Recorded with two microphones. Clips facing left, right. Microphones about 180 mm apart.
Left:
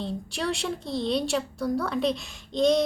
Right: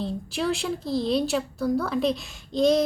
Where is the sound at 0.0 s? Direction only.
Centre (ahead or behind).